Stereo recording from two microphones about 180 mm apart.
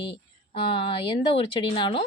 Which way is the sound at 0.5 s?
30° left (ahead or behind).